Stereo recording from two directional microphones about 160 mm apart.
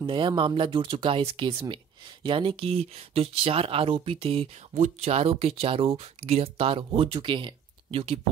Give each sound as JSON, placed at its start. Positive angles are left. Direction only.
{"t": 0.0, "sound": "speech", "side_deg": -30}